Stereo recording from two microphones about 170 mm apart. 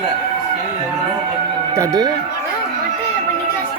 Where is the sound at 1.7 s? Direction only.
20° right (ahead or behind).